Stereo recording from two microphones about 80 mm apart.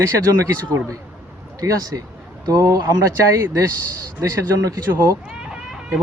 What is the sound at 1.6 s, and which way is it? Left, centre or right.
Speech, right.